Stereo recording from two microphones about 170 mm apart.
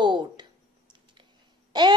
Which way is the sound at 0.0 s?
25° right (ahead or behind).